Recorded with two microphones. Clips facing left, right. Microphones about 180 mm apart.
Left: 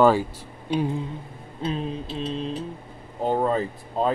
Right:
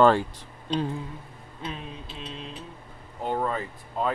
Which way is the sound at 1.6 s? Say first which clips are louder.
Left 9 dB; 35° left (ahead or behind).